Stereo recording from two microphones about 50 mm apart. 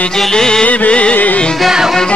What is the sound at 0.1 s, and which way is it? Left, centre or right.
Music, centre.